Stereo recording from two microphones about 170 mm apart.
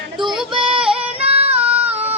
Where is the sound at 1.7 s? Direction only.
10° right (ahead or behind).